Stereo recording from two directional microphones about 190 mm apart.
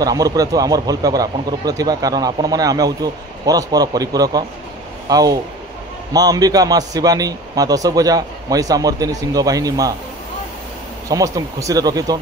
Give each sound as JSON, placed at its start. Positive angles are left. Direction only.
{"t": 0.0, "sound": "speech", "side_deg": -20}
{"t": 11.1, "sound": "speech", "side_deg": -15}